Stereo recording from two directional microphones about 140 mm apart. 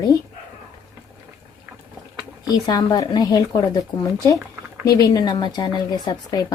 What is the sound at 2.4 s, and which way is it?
Speech, 25° left (ahead or behind).